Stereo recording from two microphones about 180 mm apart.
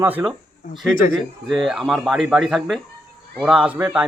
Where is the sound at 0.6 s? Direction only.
50° left (ahead or behind).